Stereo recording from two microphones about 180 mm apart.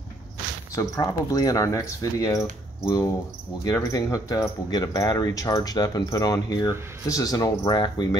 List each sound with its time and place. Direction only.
0.7 s speech: 20° left (ahead or behind)